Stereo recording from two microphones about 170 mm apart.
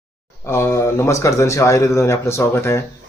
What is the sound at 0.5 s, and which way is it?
Speech, 15° left (ahead or behind).